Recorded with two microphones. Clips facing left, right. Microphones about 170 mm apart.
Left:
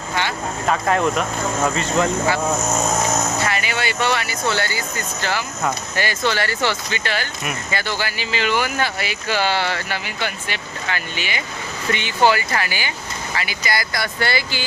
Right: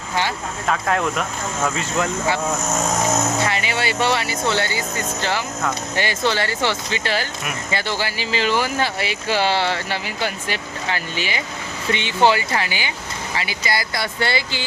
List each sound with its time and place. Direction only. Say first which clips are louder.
0.7 s speech: left 2 dB; centre (ahead or behind)
3.4 s speech: right 1 dB; 25° right (ahead or behind)